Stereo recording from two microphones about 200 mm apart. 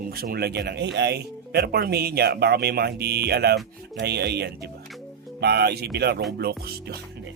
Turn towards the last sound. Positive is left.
turn(degrees=-50)  # may be behind; listen again after turning